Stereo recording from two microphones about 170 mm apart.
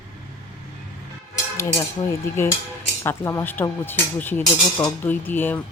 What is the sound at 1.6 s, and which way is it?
Speech, 15° left (ahead or behind).